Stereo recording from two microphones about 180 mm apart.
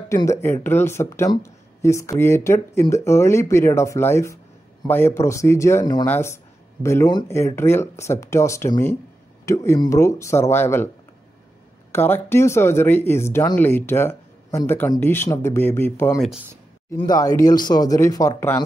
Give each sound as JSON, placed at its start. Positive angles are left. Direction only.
{"t": 0.1, "sound": "speech", "side_deg": 15}
{"t": 11.9, "sound": "speech", "side_deg": 15}